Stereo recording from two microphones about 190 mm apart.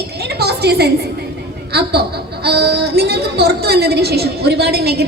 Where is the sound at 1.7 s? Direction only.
60° right (ahead or behind).